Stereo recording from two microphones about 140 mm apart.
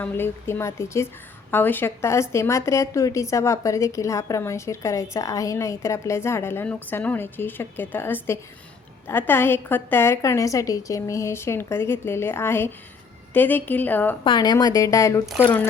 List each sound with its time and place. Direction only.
0.0 s a woman's voice: 15° left (ahead or behind)
14.3 s a woman's voice: 30° left (ahead or behind)